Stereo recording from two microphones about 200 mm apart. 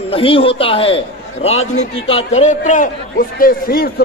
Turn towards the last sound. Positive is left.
turn(degrees=45)  # may be behind; listen again after turning